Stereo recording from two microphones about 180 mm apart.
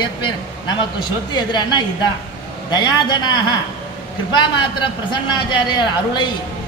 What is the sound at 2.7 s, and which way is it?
Speech, 25° left (ahead or behind).